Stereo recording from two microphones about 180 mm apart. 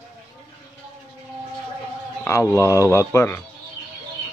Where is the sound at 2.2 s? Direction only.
15° left (ahead or behind).